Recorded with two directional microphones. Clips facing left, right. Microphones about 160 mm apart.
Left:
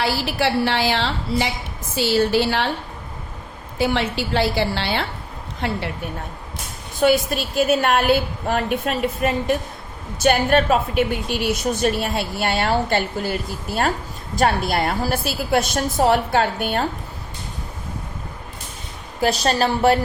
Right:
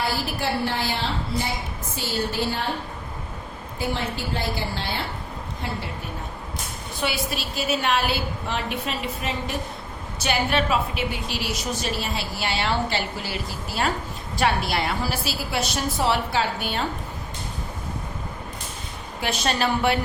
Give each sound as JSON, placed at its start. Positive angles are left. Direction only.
{"t": 0.0, "sound": "a woman's voice", "side_deg": 90}
{"t": 3.8, "sound": "a woman's voice", "side_deg": 90}
{"t": 5.6, "sound": "a woman's voice", "side_deg": 75}
{"t": 7.0, "sound": "a woman's voice", "side_deg": 45}
{"t": 19.2, "sound": "a woman's voice", "side_deg": 40}